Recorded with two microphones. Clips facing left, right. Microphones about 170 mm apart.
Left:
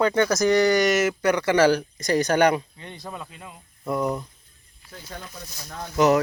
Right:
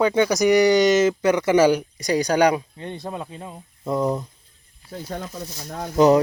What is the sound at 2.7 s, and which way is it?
Speech, 30° right (ahead or behind).